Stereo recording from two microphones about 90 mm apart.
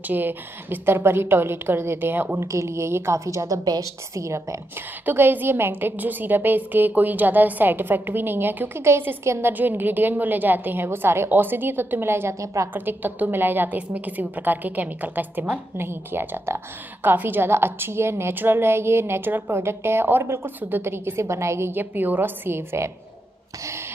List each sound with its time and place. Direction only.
0.1 s a woman's voice: 20° right (ahead or behind)
5.0 s a woman's voice: 20° right (ahead or behind)
12.7 s a woman's voice: 20° right (ahead or behind)